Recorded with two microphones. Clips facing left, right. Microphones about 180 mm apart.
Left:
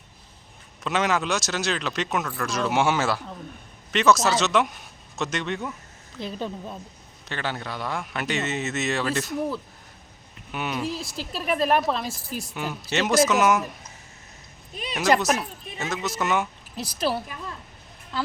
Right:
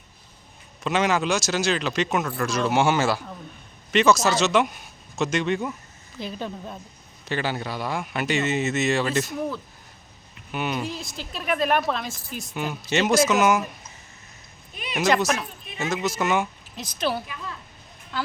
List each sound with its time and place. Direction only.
0.9 s speech: centre (ahead or behind)
12.0 s speech: 35° left (ahead or behind)
12.5 s speech: centre (ahead or behind)
14.8 s a sound: 35° left (ahead or behind)
15.2 s speech: centre (ahead or behind)
16.7 s speech: 35° left (ahead or behind)